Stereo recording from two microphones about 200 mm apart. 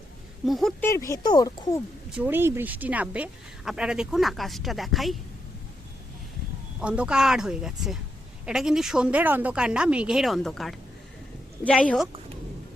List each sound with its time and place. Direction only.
0.4 s a woman's voice: centre (ahead or behind)
0.8 s speech: 15° left (ahead or behind)
2.1 s a woman's voice: 10° right (ahead or behind)
6.7 s a woman's voice: 5° right (ahead or behind)